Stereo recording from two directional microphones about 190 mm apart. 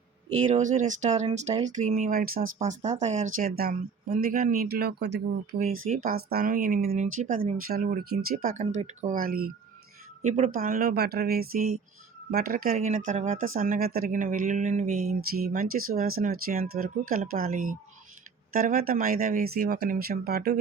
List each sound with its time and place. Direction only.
0.3 s speech: 35° right (ahead or behind)
2.6 s speech: 35° right (ahead or behind)
3.3 s speech: 50° right (ahead or behind)
5.9 s speech: 50° right (ahead or behind)
10.2 s speech: 35° right (ahead or behind)
13.6 s speech: 50° right (ahead or behind)